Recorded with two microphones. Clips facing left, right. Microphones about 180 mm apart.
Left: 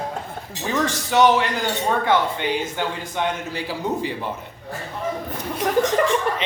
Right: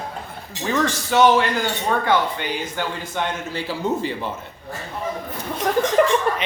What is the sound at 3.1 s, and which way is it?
A man's voice, 15° left (ahead or behind).